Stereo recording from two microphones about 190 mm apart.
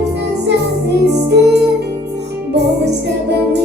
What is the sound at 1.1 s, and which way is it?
Music, 60° right (ahead or behind).